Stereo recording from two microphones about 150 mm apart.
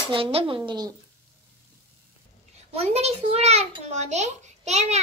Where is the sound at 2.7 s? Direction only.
40° right (ahead or behind).